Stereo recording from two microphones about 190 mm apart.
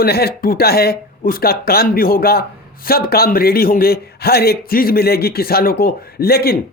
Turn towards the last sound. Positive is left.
turn(degrees=55)  # may be behind; listen again after turning